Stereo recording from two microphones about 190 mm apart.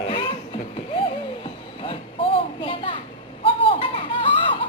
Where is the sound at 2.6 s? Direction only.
25° left (ahead or behind).